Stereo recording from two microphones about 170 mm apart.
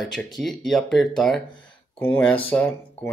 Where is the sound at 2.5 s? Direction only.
10° left (ahead or behind).